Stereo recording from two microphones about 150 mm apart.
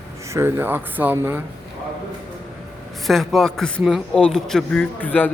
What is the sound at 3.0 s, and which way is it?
A man's voice, centre (ahead or behind).